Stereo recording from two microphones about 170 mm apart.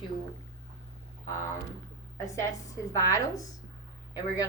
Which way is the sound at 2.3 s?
20° left (ahead or behind).